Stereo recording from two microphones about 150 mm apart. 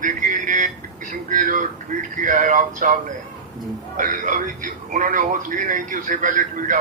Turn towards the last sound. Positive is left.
turn(degrees=-60)  # may be behind; listen again after turning